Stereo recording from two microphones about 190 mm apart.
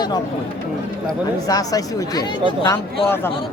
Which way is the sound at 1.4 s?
20° left (ahead or behind).